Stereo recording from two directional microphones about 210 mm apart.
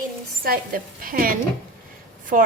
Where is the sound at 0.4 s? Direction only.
45° right (ahead or behind).